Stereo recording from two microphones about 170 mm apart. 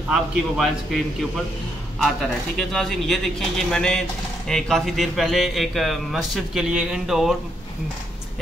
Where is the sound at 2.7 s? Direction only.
Centre (ahead or behind).